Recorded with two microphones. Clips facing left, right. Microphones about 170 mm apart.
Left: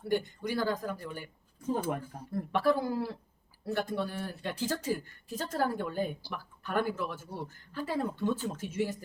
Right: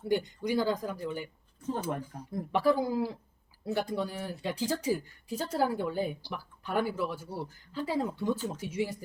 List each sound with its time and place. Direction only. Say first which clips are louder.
0.0 s speech: right 1 dB; 15° right (ahead or behind)